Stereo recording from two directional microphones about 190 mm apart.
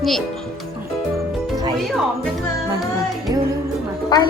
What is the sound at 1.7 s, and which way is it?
Speech, centre (ahead or behind).